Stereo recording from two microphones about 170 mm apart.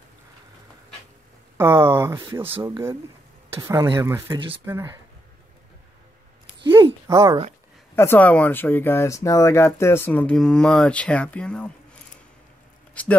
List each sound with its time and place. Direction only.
1.6 s speech: 15° right (ahead or behind)
3.5 s speech: 15° right (ahead or behind)
6.8 s a sound: 20° right (ahead or behind)
7.9 s speech: 15° left (ahead or behind)
13.0 s speech: 10° left (ahead or behind)